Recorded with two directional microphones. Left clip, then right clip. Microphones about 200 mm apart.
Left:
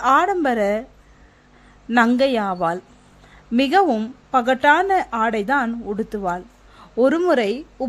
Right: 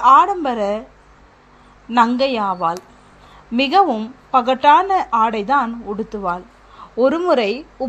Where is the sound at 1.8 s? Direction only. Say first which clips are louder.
Right 2 dB; 35° left (ahead or behind).